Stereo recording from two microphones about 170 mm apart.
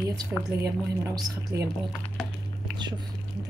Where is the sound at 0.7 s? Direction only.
20° right (ahead or behind).